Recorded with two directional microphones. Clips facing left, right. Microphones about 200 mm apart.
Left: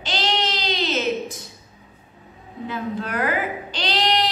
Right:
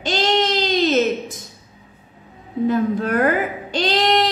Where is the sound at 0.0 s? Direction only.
45° right (ahead or behind).